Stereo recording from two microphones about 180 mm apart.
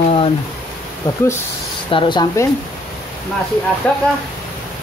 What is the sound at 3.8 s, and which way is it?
Speech, 5° left (ahead or behind).